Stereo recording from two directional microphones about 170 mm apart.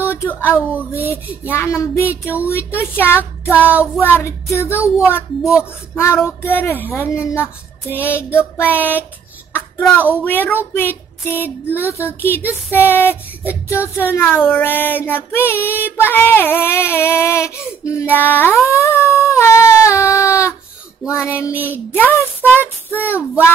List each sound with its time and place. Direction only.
0.1 s a sound: 15° left (ahead or behind)
0.4 s speech: 10° right (ahead or behind)
0.9 s speech: 15° left (ahead or behind)
3.6 s speech: 10° right (ahead or behind)
4.0 s speech: 15° left (ahead or behind)
9.5 s a sound: 10° left (ahead or behind)
10.1 s speech: 10° left (ahead or behind)
10.7 s female singing: 15° left (ahead or behind)
11.8 s speech: 15° left (ahead or behind)